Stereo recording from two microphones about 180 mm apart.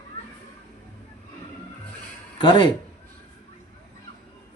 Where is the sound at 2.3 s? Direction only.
25° left (ahead or behind).